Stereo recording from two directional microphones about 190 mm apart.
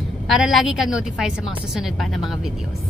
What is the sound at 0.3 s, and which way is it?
Speech, centre (ahead or behind).